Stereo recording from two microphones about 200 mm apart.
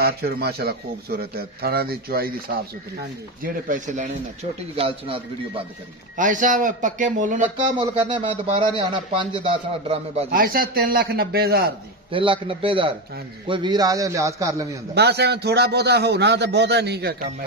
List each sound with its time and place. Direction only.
0.0 s a man's voice: 50° right (ahead or behind); by 5.2 s 30° right (ahead or behind)
6.1 s a man's voice: 40° right (ahead or behind)
7.8 s speech: 25° right (ahead or behind)
10.3 s a man's voice: 45° right (ahead or behind)
12.1 s a man's voice: 25° right (ahead or behind)
15.0 s a man's voice: 55° right (ahead or behind)